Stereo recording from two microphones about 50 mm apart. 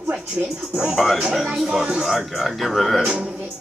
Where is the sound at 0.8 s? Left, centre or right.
Centre.